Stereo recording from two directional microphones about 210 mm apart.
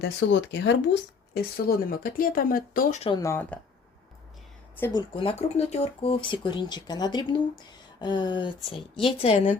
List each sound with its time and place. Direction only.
0.0 s speech: 55° left (ahead or behind)
1.3 s speech: 45° left (ahead or behind)
3.0 s speech: 20° left (ahead or behind)
5.1 s speech: 25° left (ahead or behind)